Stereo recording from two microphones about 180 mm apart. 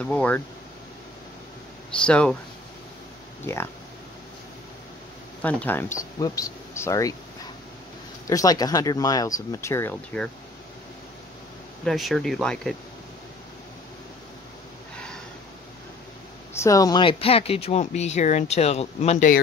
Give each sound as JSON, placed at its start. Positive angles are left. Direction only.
{"t": 0.0, "sound": "speech", "side_deg": 5}
{"t": 2.0, "sound": "speech", "side_deg": 5}
{"t": 3.5, "sound": "speech", "side_deg": 15}
{"t": 5.4, "sound": "speech", "side_deg": 10}
{"t": 8.3, "sound": "speech", "side_deg": 20}
{"t": 11.8, "sound": "speech", "side_deg": 0}
{"t": 16.5, "sound": "speech", "side_deg": 15}